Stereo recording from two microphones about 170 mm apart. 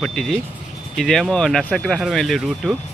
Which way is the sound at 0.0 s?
5° left (ahead or behind).